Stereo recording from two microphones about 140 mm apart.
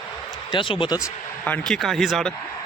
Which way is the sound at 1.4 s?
10° left (ahead or behind).